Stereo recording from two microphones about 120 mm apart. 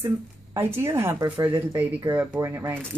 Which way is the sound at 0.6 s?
20° right (ahead or behind).